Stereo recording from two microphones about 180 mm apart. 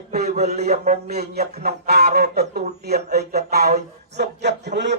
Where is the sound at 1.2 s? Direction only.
60° right (ahead or behind).